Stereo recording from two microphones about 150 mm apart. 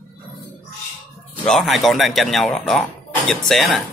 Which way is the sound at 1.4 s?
Centre (ahead or behind).